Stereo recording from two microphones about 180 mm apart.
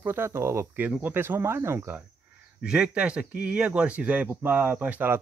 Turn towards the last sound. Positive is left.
turn(degrees=-10)  # may be behind; listen again after turning